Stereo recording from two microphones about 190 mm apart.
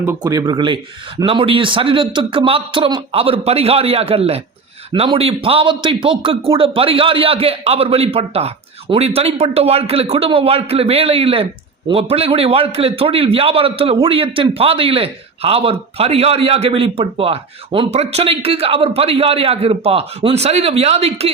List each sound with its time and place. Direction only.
0.0 s a man's voice: 15° right (ahead or behind); by 21.2 s 35° right (ahead or behind)